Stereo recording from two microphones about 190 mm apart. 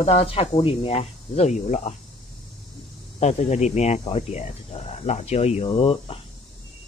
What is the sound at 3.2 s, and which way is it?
Speech, 35° left (ahead or behind).